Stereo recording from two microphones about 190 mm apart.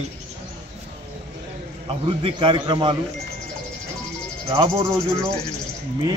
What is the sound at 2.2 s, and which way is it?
Speech, 25° right (ahead or behind).